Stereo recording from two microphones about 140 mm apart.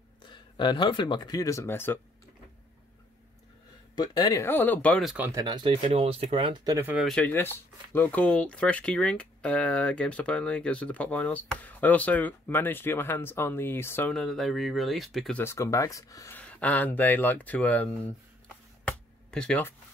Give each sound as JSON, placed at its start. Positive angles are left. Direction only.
{"t": 0.2, "sound": "speech", "side_deg": 35}
{"t": 3.9, "sound": "speech", "side_deg": 30}
{"t": 4.4, "sound": "speech", "side_deg": 15}
{"t": 5.3, "sound": "speech", "side_deg": -30}
{"t": 5.8, "sound": "speech", "side_deg": -45}
{"t": 7.1, "sound": "speech", "side_deg": 10}
{"t": 14.1, "sound": "speech", "side_deg": 0}
{"t": 15.3, "sound": "speech", "side_deg": 20}
{"t": 16.3, "sound": "speech", "side_deg": 10}
{"t": 18.9, "sound": "a sound", "side_deg": 5}